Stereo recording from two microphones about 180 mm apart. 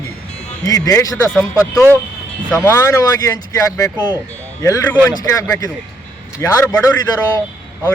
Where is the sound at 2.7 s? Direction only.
15° left (ahead or behind).